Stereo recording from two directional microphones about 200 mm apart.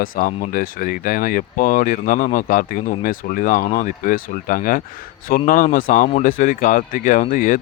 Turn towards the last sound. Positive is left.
turn(degrees=40)  # may be behind; listen again after turning